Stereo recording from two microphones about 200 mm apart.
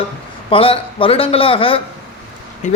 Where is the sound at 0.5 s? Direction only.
25° left (ahead or behind).